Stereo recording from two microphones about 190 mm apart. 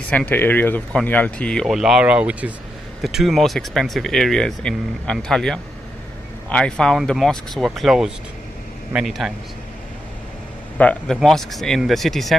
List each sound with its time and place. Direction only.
0.1 s speech: 10° left (ahead or behind)
10.8 s a man's voice: 5° left (ahead or behind)